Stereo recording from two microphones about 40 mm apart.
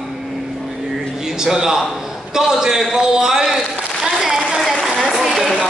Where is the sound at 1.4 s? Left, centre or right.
Centre.